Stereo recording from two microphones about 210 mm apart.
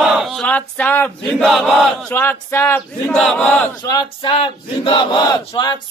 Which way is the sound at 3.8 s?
20° left (ahead or behind).